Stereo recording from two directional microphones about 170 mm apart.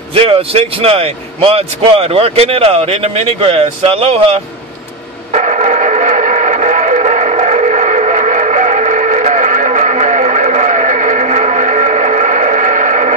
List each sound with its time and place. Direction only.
0.1 s speech: 35° right (ahead or behind)
5.3 s radio: 45° right (ahead or behind)